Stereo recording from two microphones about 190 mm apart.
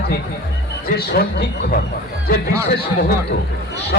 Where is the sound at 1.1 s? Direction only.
55° left (ahead or behind).